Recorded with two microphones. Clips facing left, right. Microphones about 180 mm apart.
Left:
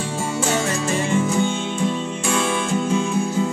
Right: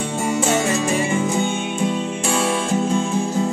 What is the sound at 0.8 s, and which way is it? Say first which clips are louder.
Music: right 1 dB; 15° right (ahead or behind).